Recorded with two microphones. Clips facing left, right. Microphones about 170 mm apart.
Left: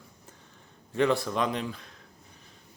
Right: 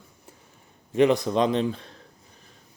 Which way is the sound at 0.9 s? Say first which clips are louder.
Right 6 dB; 20° right (ahead or behind).